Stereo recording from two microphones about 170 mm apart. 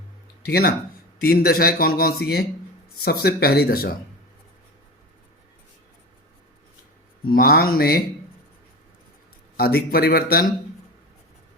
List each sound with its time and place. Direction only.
0.4 s speech: 65° left (ahead or behind)
7.3 s speech: 60° left (ahead or behind)
9.6 s speech: 65° left (ahead or behind)